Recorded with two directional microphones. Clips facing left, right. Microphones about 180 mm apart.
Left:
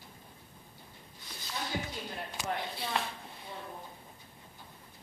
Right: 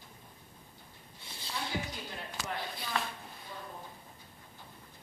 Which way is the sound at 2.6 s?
25° left (ahead or behind).